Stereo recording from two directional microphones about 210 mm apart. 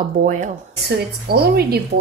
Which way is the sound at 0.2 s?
35° right (ahead or behind).